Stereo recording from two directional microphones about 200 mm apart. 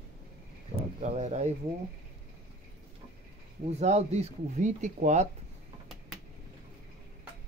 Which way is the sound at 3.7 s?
35° right (ahead or behind).